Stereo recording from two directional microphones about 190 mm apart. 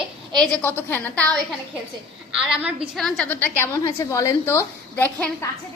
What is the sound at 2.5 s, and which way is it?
A woman's voice, 5° right (ahead or behind).